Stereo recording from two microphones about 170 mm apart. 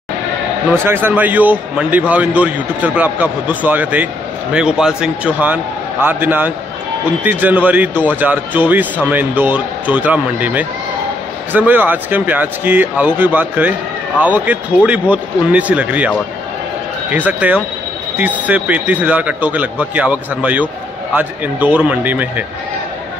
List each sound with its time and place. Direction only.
0.7 s a man's voice: 10° right (ahead or behind)
17.1 s a man's voice: 10° right (ahead or behind)